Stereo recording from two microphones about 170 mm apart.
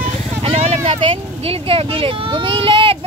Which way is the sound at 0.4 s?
40° right (ahead or behind).